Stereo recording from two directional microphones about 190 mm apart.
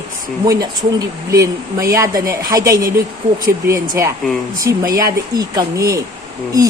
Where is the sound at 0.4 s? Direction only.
20° right (ahead or behind).